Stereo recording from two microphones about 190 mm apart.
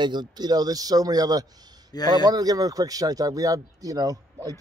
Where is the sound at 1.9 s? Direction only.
20° left (ahead or behind).